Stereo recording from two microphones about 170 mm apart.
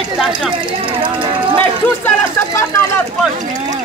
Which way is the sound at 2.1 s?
15° left (ahead or behind).